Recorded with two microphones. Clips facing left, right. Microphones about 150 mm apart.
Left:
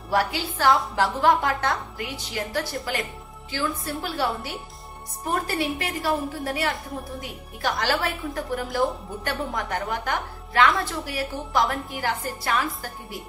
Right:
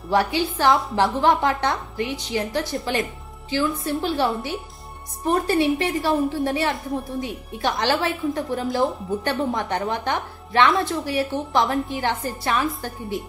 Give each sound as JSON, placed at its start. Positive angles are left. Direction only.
{"t": 0.1, "sound": "a woman's voice", "side_deg": -25}